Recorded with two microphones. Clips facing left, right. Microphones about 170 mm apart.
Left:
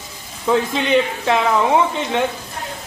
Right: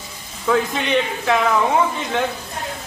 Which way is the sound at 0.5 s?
25° left (ahead or behind).